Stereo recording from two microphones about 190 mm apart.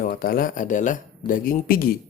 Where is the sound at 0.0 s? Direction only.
50° left (ahead or behind).